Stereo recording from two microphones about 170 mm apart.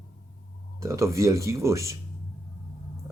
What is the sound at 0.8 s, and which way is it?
Speech, 15° right (ahead or behind).